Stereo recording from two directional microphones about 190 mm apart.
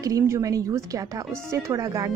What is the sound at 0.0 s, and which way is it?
Speech, 15° right (ahead or behind).